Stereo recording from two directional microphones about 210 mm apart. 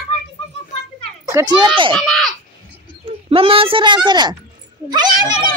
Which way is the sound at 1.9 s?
Centre (ahead or behind).